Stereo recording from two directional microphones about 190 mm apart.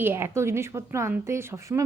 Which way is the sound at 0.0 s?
10° right (ahead or behind).